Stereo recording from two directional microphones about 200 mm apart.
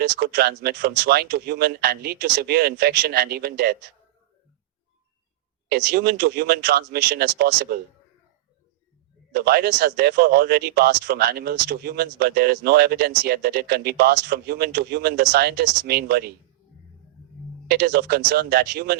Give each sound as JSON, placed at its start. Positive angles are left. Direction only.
{"t": 0.2, "sound": "speech", "side_deg": -50}
{"t": 5.6, "sound": "speech", "side_deg": -50}
{"t": 9.3, "sound": "speech", "side_deg": -50}
{"t": 17.7, "sound": "speech", "side_deg": -50}